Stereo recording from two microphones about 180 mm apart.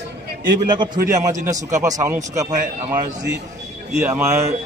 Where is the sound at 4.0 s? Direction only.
10° right (ahead or behind).